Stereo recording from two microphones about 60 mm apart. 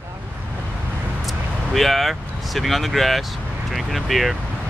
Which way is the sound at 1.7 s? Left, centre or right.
Centre.